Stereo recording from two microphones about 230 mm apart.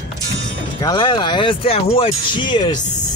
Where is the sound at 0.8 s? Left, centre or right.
Centre.